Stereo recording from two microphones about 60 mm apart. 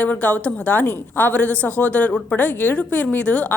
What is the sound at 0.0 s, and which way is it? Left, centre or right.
Speech, left.